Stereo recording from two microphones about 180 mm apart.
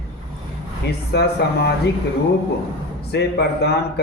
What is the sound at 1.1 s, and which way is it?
Speech, 65° left (ahead or behind).